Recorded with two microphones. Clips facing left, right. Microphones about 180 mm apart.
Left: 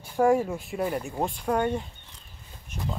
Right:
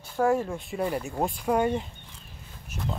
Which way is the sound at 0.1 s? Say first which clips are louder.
Left 2 dB; 10° left (ahead or behind).